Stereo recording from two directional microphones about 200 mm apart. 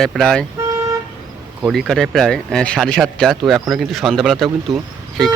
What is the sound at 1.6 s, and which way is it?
Speech, centre (ahead or behind).